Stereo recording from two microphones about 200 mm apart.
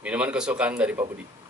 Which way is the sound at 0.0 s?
5° right (ahead or behind).